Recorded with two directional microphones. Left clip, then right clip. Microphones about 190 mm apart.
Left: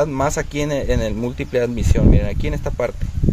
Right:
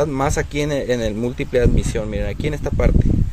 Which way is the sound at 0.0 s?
10° right (ahead or behind).